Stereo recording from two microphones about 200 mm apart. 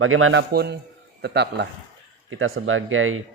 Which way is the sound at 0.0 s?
90° right.